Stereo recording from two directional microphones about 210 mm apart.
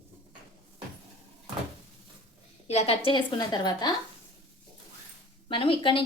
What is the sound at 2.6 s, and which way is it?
A woman's voice, 30° left (ahead or behind).